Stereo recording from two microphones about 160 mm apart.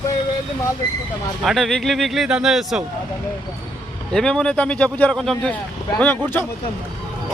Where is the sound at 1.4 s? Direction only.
Centre (ahead or behind).